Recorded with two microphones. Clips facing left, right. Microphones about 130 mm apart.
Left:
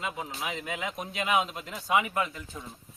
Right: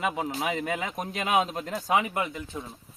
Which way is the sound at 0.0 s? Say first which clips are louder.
Right 6 dB; 65° right (ahead or behind).